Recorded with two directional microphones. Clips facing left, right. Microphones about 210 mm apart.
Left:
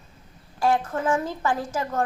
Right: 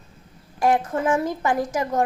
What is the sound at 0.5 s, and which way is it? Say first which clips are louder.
A woman's voice: right 2 dB; 20° right (ahead or behind).